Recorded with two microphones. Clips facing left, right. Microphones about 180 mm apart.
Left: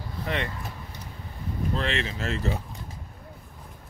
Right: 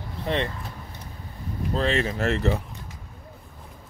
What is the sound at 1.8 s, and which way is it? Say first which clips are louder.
Speech: right 8 dB; 40° right (ahead or behind).